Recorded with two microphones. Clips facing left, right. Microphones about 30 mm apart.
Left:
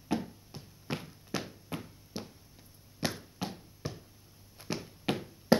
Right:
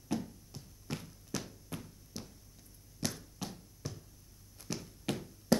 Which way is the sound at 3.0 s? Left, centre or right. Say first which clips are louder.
Left 4 dB; left.